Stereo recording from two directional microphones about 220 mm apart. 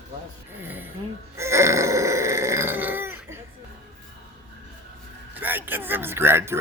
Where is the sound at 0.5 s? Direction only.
10° right (ahead or behind).